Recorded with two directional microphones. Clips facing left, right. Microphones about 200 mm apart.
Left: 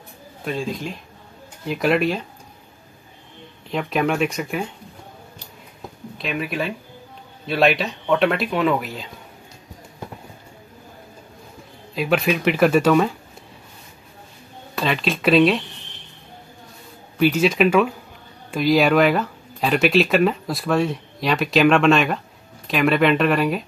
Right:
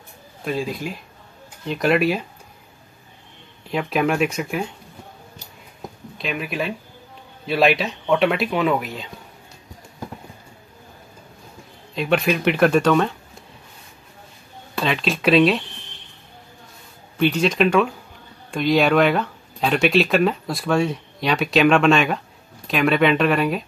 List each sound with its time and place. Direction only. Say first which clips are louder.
0.5 s speech: right 1 dB; 5° right (ahead or behind)
3.7 s speech: right 1 dB; centre (ahead or behind)
6.1 s speech: left 1 dB; centre (ahead or behind)
11.9 s speech: even; 5° left (ahead or behind)
14.8 s speech: even; centre (ahead or behind)
17.2 s speech: left 1 dB; 5° left (ahead or behind)